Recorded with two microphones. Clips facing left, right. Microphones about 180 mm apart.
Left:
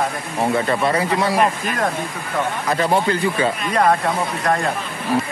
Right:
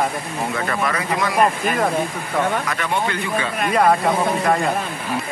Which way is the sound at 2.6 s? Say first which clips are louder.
Left 5 dB; 35° left (ahead or behind).